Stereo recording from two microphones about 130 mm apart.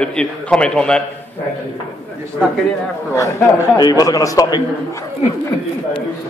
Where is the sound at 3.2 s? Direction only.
25° left (ahead or behind).